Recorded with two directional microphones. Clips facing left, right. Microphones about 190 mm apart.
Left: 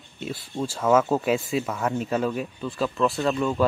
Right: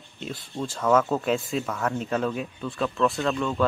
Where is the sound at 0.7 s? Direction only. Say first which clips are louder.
Left 1 dB; 5° left (ahead or behind).